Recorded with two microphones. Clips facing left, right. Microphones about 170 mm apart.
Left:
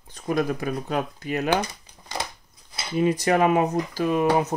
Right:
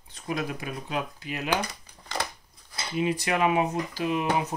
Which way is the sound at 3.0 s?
40° left (ahead or behind).